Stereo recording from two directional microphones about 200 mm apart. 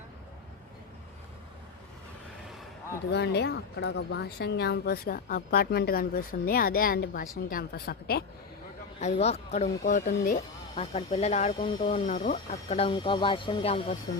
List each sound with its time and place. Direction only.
3.1 s speech: 55° left (ahead or behind)
9.0 s speech: 35° left (ahead or behind)